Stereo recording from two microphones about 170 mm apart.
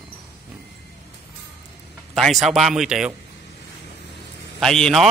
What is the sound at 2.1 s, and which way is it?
Speech, centre (ahead or behind).